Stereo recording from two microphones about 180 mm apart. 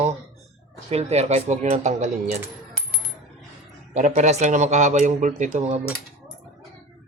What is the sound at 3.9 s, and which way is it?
Speech, 45° right (ahead or behind).